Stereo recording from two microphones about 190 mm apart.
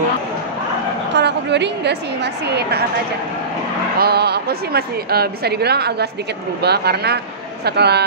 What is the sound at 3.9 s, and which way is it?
Speech, 55° right (ahead or behind).